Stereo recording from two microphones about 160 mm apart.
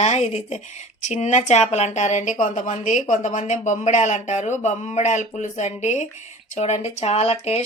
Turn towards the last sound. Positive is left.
turn(degrees=40)  # may be behind; listen again after turning